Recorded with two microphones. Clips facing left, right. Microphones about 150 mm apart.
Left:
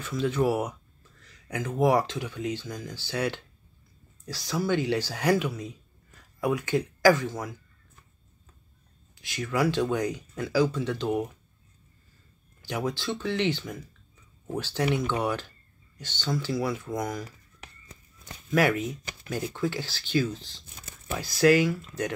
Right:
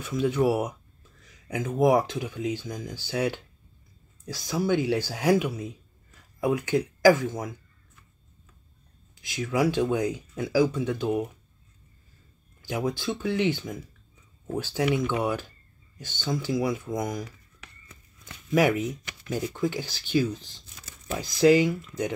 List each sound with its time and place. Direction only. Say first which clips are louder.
0.0 s speech: right 2 dB; 10° right (ahead or behind)
1.2 s a sound: right 2 dB; 10° right (ahead or behind)
1.8 s speech: right 2 dB; 10° right (ahead or behind)
9.3 s speech: right 2 dB; 10° right (ahead or behind)
12.6 s speech: right 2 dB; 10° right (ahead or behind)
18.5 s speech: right 2 dB; 10° right (ahead or behind)